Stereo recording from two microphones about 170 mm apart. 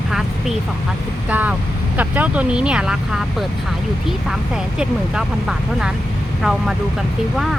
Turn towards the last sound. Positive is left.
turn(degrees=0)  # may be behind; listen again after turning